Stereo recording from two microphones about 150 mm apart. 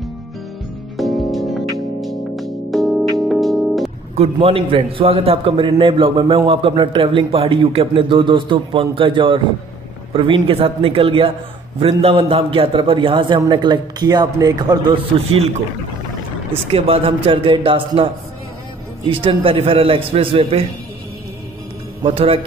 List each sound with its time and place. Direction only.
0.9 s music: centre (ahead or behind)
4.1 s a man's voice: 40° right (ahead or behind)
16.7 s a man's voice: 40° right (ahead or behind)
22.0 s a man's voice: 40° right (ahead or behind)